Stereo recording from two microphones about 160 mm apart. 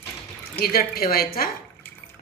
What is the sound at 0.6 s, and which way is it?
Speech, 70° left (ahead or behind).